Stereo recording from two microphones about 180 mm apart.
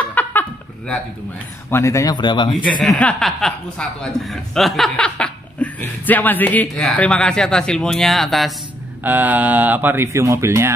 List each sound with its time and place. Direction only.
0.0 s a sound: 10° left (ahead or behind)
1.7 s speech: 15° left (ahead or behind)
2.9 s speech: 5° left (ahead or behind)
9.0 s speech: 10° right (ahead or behind)